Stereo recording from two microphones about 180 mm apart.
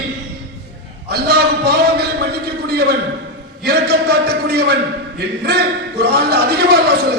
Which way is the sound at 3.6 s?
65° right (ahead or behind).